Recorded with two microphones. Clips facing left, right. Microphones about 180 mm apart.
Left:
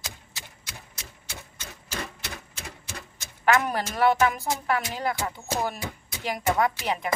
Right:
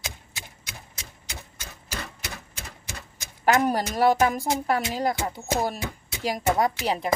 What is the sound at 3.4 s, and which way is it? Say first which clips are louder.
A woman's voice: right 2 dB; 40° right (ahead or behind).